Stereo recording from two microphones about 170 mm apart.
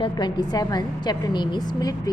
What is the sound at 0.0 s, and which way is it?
A woman's voice, 25° left (ahead or behind).